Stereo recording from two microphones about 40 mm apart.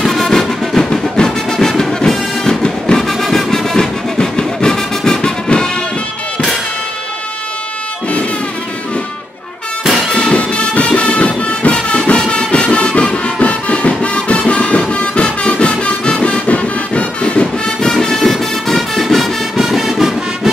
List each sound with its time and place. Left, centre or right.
0.0 s music: centre
3.1 s music: centre
10.1 s music: left
16.4 s vehicle: left; by 20.2 s centre